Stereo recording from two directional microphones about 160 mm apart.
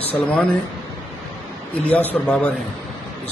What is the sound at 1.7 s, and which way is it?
Speech, 10° left (ahead or behind).